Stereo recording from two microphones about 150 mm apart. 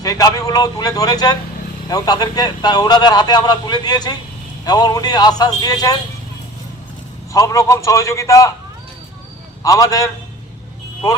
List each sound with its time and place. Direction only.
0.0 s a man's voice: 25° left (ahead or behind)
7.3 s speech: 20° left (ahead or behind)
9.6 s speech: 20° left (ahead or behind)